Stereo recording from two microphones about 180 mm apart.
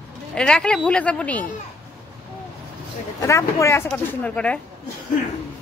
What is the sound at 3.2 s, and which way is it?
Speech, 15° left (ahead or behind).